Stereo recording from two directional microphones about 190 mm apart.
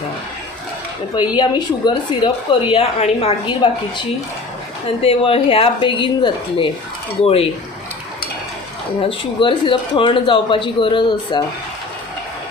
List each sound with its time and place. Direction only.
1.4 s speech: 25° left (ahead or behind)
5.0 s speech: 30° left (ahead or behind)
9.0 s speech: 25° left (ahead or behind)